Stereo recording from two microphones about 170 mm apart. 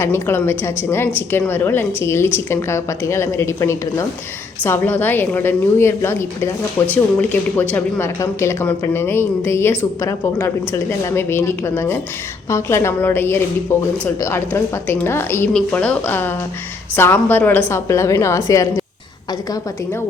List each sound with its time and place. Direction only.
0.0 s speech: 15° left (ahead or behind)